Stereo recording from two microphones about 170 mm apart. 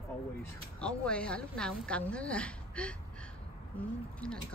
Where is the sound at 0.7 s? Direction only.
5° left (ahead or behind).